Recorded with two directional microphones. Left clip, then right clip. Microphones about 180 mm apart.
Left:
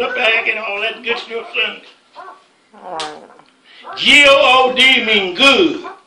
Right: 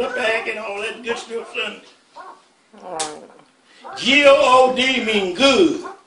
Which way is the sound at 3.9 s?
25° right (ahead or behind).